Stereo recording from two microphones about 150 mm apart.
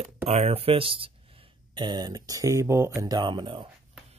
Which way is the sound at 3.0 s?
30° right (ahead or behind).